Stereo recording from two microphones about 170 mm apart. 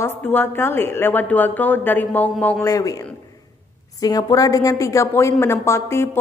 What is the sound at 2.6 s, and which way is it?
A woman's voice, 20° left (ahead or behind).